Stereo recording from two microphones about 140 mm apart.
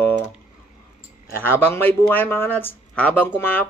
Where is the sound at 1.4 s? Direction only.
15° left (ahead or behind).